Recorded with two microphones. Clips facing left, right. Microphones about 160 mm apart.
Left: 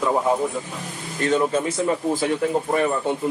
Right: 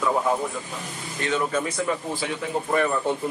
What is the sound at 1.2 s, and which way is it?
Speech, 30° left (ahead or behind).